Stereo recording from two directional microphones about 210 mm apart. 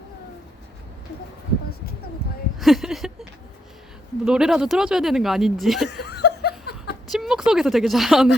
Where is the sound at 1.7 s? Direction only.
45° left (ahead or behind).